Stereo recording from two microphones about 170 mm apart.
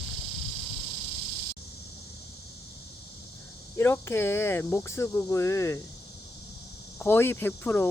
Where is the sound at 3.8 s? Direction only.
15° left (ahead or behind).